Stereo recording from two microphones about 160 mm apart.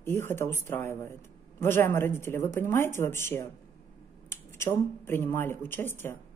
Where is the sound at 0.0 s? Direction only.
15° left (ahead or behind).